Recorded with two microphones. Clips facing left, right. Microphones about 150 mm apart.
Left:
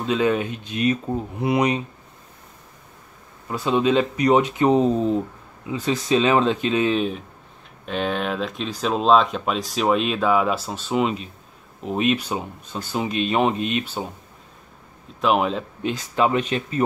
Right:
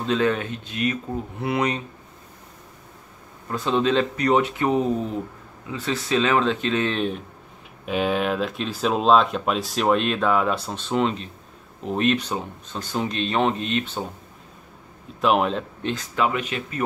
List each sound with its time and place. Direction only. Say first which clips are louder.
0.0 s speech: left 1 dB; 10° left (ahead or behind)
3.4 s speech: left 2 dB; 10° left (ahead or behind)
15.1 s speech: even; centre (ahead or behind)
16.2 s speech: left 4 dB; 30° left (ahead or behind)